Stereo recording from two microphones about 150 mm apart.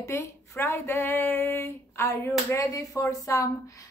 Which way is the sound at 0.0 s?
20° left (ahead or behind).